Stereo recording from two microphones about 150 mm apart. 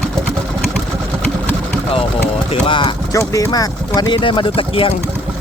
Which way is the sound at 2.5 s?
35° left (ahead or behind).